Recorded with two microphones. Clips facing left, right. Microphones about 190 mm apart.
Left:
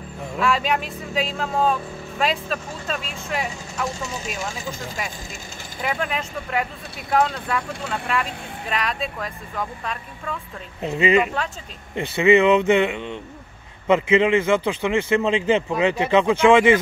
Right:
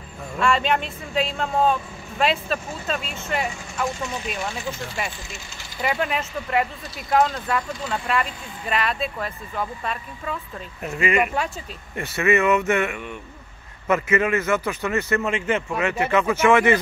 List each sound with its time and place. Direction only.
0.4 s speech: centre (ahead or behind)
10.8 s speech: 25° left (ahead or behind)
11.4 s speech: 10° right (ahead or behind)
11.9 s a man's voice: 15° left (ahead or behind)
15.4 s speech: 30° left (ahead or behind)
16.3 s a man's voice: 15° left (ahead or behind)